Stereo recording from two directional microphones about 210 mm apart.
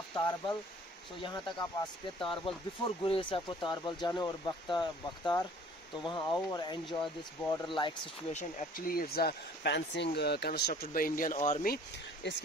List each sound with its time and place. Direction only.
0.1 s speech: 20° left (ahead or behind); by 11.5 s 40° left (ahead or behind)
11.6 s speech: 50° left (ahead or behind)